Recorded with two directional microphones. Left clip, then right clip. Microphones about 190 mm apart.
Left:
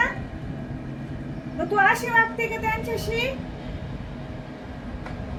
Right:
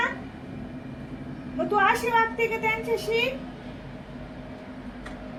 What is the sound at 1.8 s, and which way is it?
Speech, 15° left (ahead or behind).